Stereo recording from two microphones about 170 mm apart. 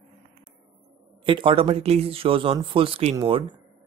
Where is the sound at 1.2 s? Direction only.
30° right (ahead or behind).